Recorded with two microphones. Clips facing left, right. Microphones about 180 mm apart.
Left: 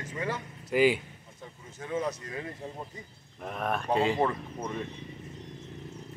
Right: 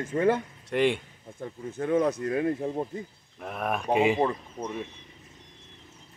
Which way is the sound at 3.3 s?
5° right (ahead or behind).